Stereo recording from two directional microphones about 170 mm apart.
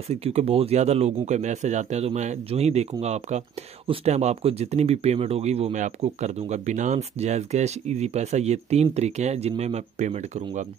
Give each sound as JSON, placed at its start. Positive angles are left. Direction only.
{"t": 0.1, "sound": "speech", "side_deg": -40}